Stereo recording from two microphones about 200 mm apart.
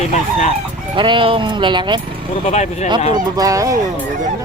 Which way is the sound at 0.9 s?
25° right (ahead or behind).